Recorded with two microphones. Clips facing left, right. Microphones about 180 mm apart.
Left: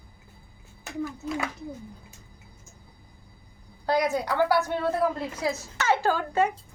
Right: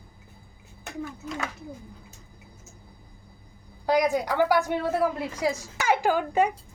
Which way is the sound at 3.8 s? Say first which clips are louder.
Right 2 dB; 15° right (ahead or behind).